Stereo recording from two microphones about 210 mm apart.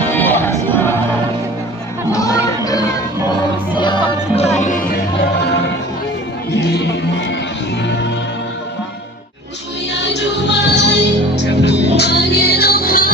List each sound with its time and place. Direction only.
0.1 s music: 10° left (ahead or behind)
2.0 s music: 15° left (ahead or behind)
4.6 s music: 40° left (ahead or behind); by 7.3 s 55° left (ahead or behind)
9.9 s music: 55° left (ahead or behind)